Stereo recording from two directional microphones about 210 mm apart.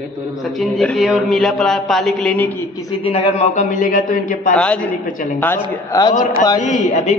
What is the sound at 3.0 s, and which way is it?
A man's voice, 30° left (ahead or behind).